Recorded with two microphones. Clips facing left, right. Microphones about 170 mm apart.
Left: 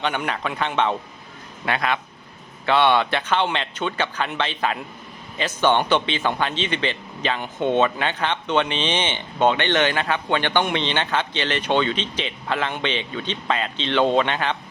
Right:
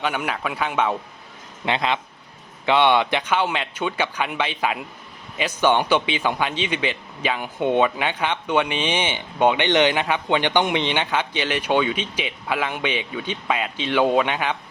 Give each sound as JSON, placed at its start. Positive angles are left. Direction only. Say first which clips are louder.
{"t": 0.0, "sound": "speech", "louder": "even", "side_deg": -5}
{"t": 1.6, "sound": "speech", "louder": "right 1 dB", "side_deg": -20}